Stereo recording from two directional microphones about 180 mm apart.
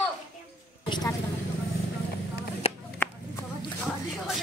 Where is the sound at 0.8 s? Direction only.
25° left (ahead or behind).